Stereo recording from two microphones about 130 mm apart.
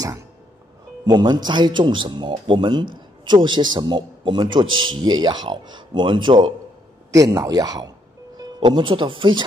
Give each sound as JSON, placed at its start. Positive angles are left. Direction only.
{"t": 1.0, "sound": "a man's voice", "side_deg": -30}
{"t": 7.1, "sound": "speech", "side_deg": -25}